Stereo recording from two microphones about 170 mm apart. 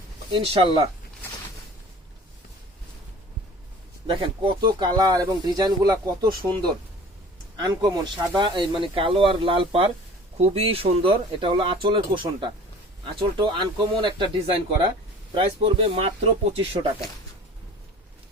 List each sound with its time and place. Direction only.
0.3 s speech: 30° right (ahead or behind)
4.0 s speech: 30° right (ahead or behind)
7.5 s speech: 25° right (ahead or behind)